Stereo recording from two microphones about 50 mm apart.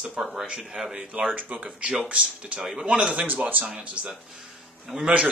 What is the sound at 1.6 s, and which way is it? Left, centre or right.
Speech, centre.